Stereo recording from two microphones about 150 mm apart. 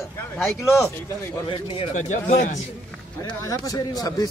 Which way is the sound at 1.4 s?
40° left (ahead or behind).